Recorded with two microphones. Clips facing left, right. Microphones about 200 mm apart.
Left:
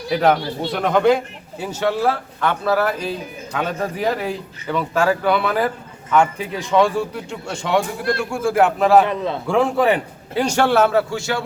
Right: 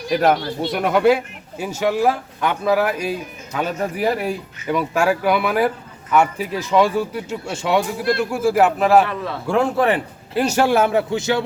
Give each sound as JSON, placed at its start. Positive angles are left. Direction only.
{"t": 0.1, "sound": "a man's voice", "side_deg": -10}
{"t": 9.0, "sound": "a man's voice", "side_deg": 20}
{"t": 9.5, "sound": "speech", "side_deg": 0}